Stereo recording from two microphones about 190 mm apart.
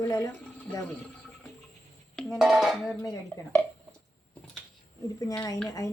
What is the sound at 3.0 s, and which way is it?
Speech, 15° left (ahead or behind).